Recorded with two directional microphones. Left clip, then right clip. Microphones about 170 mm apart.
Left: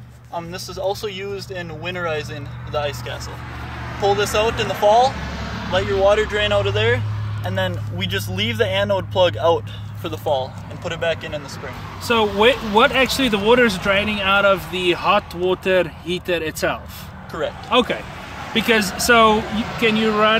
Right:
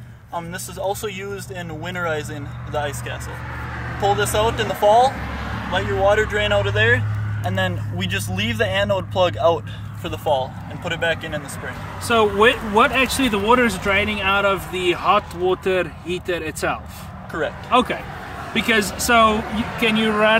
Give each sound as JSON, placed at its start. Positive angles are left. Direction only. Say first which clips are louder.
{"t": 0.5, "sound": "speech", "louder": "left 2 dB", "side_deg": 0}
{"t": 5.2, "sound": "vehicle", "louder": "even", "side_deg": 65}
{"t": 5.8, "sound": "speech", "louder": "left 1 dB", "side_deg": 10}
{"t": 6.3, "sound": "speech", "louder": "even", "side_deg": 25}
{"t": 10.0, "sound": "speech", "louder": "right 1 dB", "side_deg": 15}
{"t": 10.8, "sound": "speech", "louder": "even", "side_deg": 0}
{"t": 12.1, "sound": "speech", "louder": "even", "side_deg": 35}
{"t": 17.6, "sound": "speech", "louder": "even", "side_deg": 40}
{"t": 19.5, "sound": "speech", "louder": "even", "side_deg": 75}
{"t": 19.8, "sound": "speech", "louder": "left 1 dB", "side_deg": 20}